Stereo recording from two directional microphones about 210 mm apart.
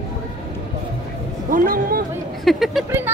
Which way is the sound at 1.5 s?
40° right (ahead or behind).